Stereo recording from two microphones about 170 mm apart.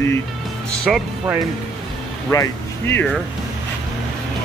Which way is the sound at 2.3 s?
15° left (ahead or behind).